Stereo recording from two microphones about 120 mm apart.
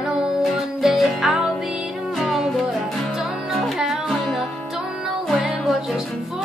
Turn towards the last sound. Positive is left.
turn(degrees=0)  # may be behind; listen again after turning